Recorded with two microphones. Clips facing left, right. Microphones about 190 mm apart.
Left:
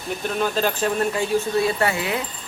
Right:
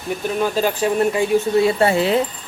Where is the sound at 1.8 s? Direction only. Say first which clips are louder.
Right 7 dB; 30° right (ahead or behind).